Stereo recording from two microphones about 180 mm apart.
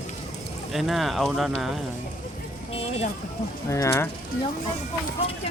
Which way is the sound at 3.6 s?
15° left (ahead or behind).